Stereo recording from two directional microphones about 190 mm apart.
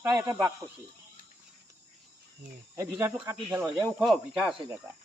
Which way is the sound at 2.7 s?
15° right (ahead or behind).